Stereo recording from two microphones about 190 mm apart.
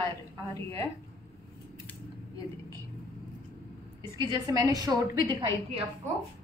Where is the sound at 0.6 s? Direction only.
15° left (ahead or behind).